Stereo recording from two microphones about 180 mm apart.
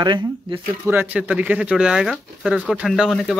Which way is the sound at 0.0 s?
25° right (ahead or behind).